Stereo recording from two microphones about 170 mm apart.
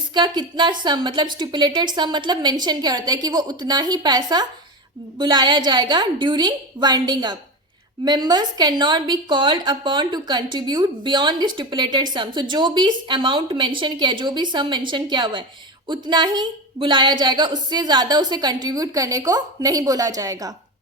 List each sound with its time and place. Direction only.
0.1 s a woman's voice: 25° right (ahead or behind)